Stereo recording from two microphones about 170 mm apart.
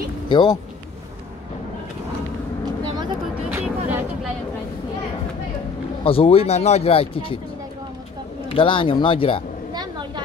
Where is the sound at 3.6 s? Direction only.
Centre (ahead or behind).